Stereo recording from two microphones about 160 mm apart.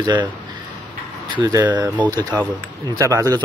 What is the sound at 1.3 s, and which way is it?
Speech, 25° right (ahead or behind).